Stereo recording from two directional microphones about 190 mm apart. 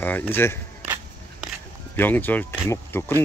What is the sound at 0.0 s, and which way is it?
Speech, 10° left (ahead or behind).